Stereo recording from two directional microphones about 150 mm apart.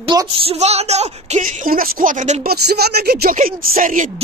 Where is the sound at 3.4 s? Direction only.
75° right (ahead or behind).